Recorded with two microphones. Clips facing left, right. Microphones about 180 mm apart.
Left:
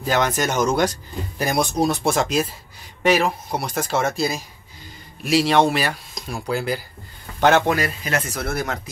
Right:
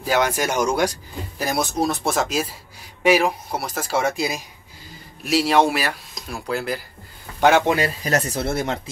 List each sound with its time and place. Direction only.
0.0 s speech: 10° right (ahead or behind)
5.2 s speech: 5° right (ahead or behind)
7.7 s speech: 35° right (ahead or behind)